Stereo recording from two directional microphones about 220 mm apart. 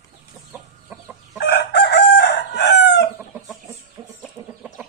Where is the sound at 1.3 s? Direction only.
45° left (ahead or behind).